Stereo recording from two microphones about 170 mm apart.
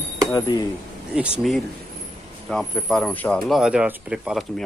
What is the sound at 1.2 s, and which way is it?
Speech, 5° right (ahead or behind).